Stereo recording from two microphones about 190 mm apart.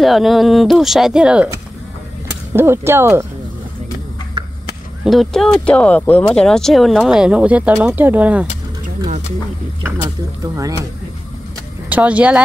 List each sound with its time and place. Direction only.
0.0 s speech: centre (ahead or behind)
2.5 s speech: 15° right (ahead or behind)
5.0 s speech: centre (ahead or behind)
10.4 s speech: 20° right (ahead or behind)
11.9 s speech: 5° right (ahead or behind)